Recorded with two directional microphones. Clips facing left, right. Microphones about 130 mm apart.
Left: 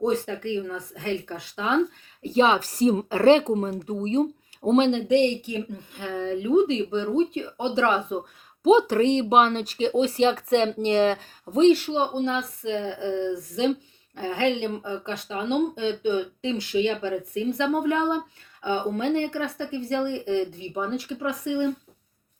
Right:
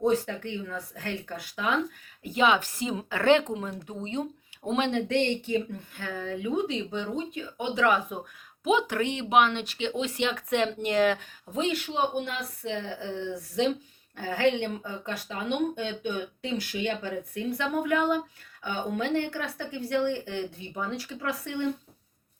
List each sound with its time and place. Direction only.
0.0 s speech: 20° left (ahead or behind); by 4.9 s 35° left (ahead or behind)
4.9 s speech: 15° left (ahead or behind)
14.2 s speech: 20° left (ahead or behind)